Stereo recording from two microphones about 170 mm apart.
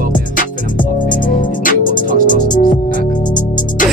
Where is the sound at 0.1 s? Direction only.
50° left (ahead or behind).